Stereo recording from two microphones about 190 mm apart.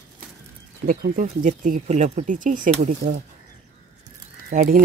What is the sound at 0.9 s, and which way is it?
Speech, 45° right (ahead or behind).